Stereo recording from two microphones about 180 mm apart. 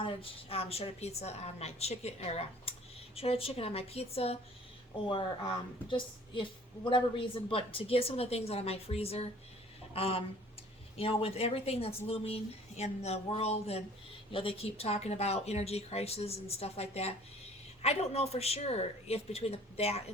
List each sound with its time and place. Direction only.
0.0 s a woman's voice: 30° left (ahead or behind)